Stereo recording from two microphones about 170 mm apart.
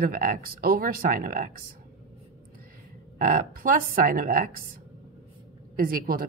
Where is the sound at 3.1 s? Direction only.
55° right (ahead or behind).